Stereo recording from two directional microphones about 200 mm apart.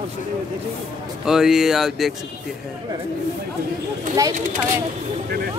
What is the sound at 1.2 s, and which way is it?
Speech, centre (ahead or behind).